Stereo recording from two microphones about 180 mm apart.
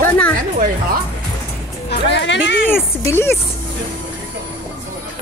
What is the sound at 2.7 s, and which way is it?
Speech, 15° left (ahead or behind).